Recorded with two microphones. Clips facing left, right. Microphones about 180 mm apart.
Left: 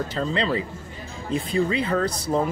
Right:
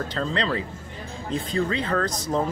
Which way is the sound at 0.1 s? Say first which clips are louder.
Left 1 dB; 5° left (ahead or behind).